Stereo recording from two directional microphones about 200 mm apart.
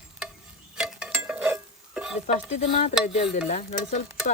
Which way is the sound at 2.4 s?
35° left (ahead or behind).